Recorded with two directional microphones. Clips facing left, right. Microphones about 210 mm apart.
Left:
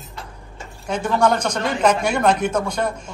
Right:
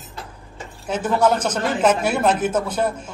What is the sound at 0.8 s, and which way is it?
Speech, 5° right (ahead or behind).